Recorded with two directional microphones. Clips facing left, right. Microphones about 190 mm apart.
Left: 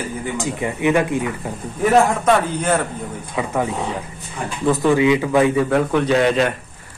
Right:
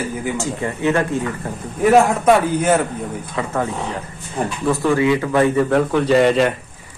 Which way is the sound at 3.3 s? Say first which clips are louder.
Left 1 dB; 15° left (ahead or behind).